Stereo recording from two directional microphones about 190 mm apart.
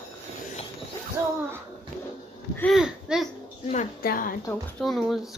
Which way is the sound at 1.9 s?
45° right (ahead or behind).